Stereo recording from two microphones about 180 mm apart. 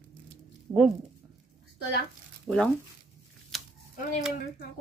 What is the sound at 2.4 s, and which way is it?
Speech, 5° left (ahead or behind).